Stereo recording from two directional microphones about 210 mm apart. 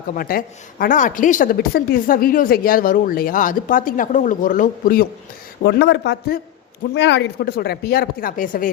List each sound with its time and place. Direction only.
0.1 s a woman's voice: 45° left (ahead or behind)
5.6 s speech: 55° left (ahead or behind)